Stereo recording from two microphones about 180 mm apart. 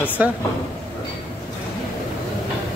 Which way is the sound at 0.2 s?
10° right (ahead or behind).